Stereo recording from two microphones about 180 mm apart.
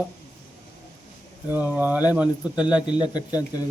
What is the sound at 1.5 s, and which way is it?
A man's voice, 10° right (ahead or behind).